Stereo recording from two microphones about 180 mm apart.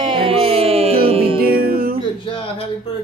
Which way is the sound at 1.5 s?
55° right (ahead or behind).